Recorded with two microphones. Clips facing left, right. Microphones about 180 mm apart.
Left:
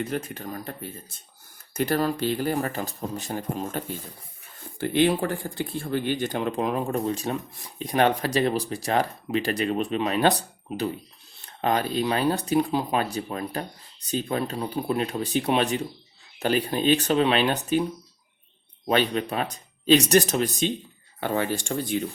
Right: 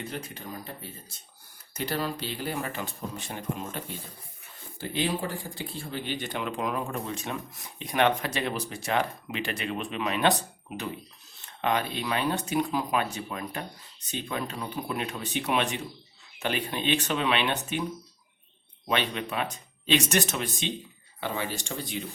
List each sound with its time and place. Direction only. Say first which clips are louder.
0.1 s speech: left 7 dB; 50° left (ahead or behind)
1.7 s speech: left 7 dB; 50° left (ahead or behind)
4.8 s speech: left 8 dB; 60° left (ahead or behind); by 17.8 s 35° left (ahead or behind)
18.9 s speech: left 6 dB; 40° left (ahead or behind)
21.2 s speech: left 6 dB; 50° left (ahead or behind)